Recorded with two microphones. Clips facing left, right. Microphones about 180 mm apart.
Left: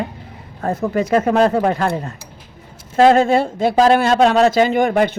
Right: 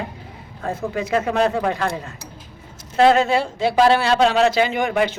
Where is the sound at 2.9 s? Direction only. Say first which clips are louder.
Left 3 dB; 50° left (ahead or behind).